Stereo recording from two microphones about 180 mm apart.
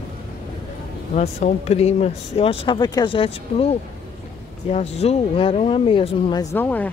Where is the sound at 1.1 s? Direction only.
40° left (ahead or behind).